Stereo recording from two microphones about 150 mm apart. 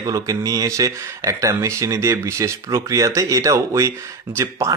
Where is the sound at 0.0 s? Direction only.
25° right (ahead or behind).